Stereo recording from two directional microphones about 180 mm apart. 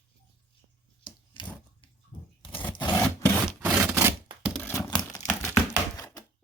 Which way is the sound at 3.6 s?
15° right (ahead or behind).